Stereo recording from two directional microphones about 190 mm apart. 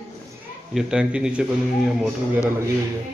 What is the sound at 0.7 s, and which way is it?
A man's voice, 5° right (ahead or behind).